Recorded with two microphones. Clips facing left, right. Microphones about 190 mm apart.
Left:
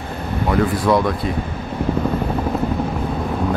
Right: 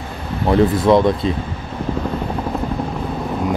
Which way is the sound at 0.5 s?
25° right (ahead or behind).